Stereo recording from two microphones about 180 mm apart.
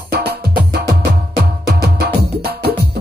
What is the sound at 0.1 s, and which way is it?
Music, 60° right (ahead or behind).